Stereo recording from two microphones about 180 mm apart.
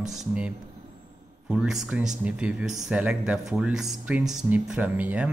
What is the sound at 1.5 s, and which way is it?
Speech, centre (ahead or behind).